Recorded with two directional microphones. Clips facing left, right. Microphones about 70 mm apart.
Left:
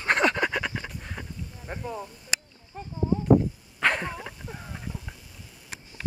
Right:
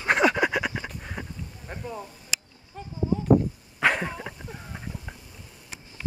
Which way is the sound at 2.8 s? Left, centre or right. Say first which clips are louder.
Left 1 dB; left.